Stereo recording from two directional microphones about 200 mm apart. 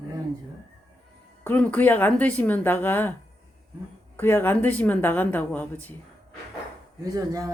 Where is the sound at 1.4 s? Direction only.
10° left (ahead or behind).